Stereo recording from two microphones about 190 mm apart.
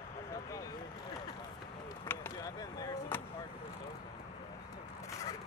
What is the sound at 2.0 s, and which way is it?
Chop, 15° left (ahead or behind).